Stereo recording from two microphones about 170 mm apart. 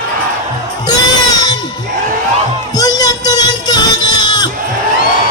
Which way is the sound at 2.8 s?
25° left (ahead or behind).